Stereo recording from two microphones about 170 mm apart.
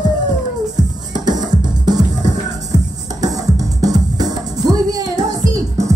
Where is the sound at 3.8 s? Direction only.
20° right (ahead or behind).